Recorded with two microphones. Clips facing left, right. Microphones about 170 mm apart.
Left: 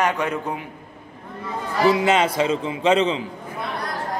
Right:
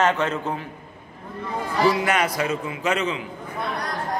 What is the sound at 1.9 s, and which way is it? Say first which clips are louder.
A man's voice: left 4 dB; 25° left (ahead or behind).